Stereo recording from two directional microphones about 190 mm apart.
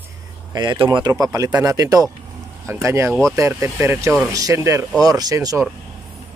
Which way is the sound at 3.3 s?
15° right (ahead or behind).